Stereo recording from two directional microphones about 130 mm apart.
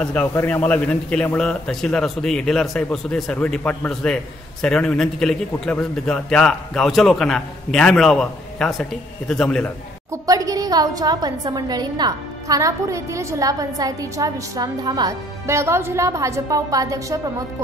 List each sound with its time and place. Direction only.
0.0 s a man's voice: 10° left (ahead or behind)
10.1 s a woman's voice: 25° right (ahead or behind)